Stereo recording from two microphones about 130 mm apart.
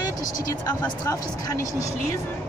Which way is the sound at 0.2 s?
30° left (ahead or behind).